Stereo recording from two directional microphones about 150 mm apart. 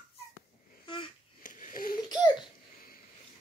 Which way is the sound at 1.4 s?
60° left (ahead or behind).